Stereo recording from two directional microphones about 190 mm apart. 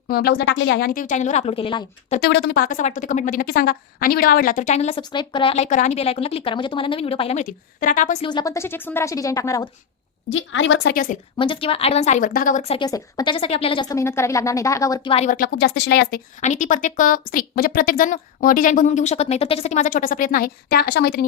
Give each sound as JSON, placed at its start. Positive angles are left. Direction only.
{"t": 0.1, "sound": "a woman's voice", "side_deg": 55}
{"t": 2.2, "sound": "speech", "side_deg": 60}
{"t": 8.2, "sound": "speech", "side_deg": 25}
{"t": 10.2, "sound": "a woman's voice", "side_deg": 90}
{"t": 10.9, "sound": "a woman's voice", "side_deg": 45}
{"t": 11.3, "sound": "speech", "side_deg": 25}
{"t": 12.8, "sound": "speech", "side_deg": 20}
{"t": 15.1, "sound": "speech", "side_deg": 35}
{"t": 15.4, "sound": "speech", "side_deg": 60}
{"t": 16.4, "sound": "a woman's voice", "side_deg": 40}